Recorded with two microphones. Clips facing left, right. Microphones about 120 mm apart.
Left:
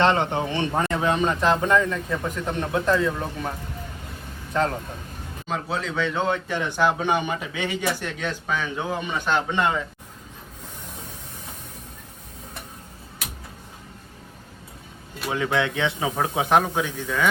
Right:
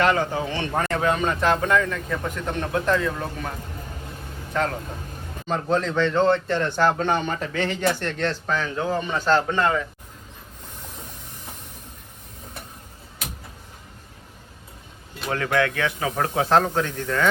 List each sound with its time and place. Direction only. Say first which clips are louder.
0.0 s a man's voice: left 1 dB; 25° left (ahead or behind)
4.5 s speech: left 1 dB; 25° left (ahead or behind)
5.5 s a man's voice: right 5 dB; 5° left (ahead or behind)
15.2 s a man's voice: right 1 dB; 15° left (ahead or behind)